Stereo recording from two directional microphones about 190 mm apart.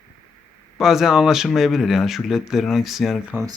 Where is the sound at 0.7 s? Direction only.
Centre (ahead or behind).